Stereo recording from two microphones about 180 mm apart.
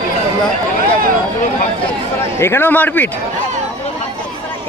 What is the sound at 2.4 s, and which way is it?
Speech, 10° left (ahead or behind).